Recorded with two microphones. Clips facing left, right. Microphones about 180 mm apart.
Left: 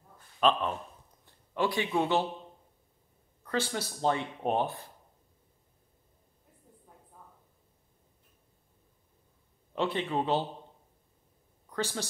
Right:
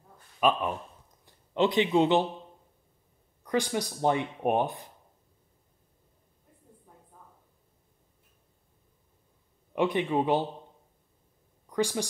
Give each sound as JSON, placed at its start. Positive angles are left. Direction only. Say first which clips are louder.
{"t": 0.4, "sound": "a man's voice", "louder": "right 1 dB", "side_deg": -10}
{"t": 3.4, "sound": "speech", "louder": "right 4 dB", "side_deg": -15}
{"t": 9.8, "sound": "speech", "louder": "right 4 dB", "side_deg": -15}
{"t": 11.7, "sound": "speech", "louder": "right 6 dB", "side_deg": -15}